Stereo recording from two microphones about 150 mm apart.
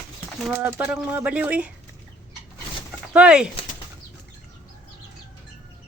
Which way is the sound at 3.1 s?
5° right (ahead or behind).